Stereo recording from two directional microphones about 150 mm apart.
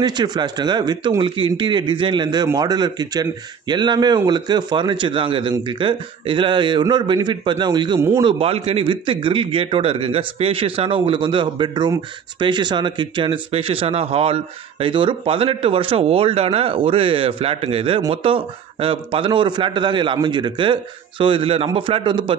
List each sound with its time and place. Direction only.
0.0 s a man's voice: 30° right (ahead or behind)